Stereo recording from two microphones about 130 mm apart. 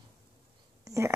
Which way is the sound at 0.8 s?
25° right (ahead or behind).